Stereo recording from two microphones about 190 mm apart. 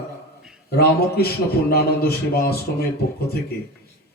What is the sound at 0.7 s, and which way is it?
A man's voice, 55° left (ahead or behind).